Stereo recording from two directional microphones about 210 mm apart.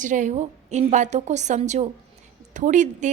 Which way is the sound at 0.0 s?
35° right (ahead or behind).